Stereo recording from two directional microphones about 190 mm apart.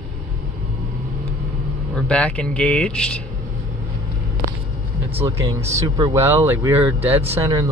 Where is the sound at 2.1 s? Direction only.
5° left (ahead or behind).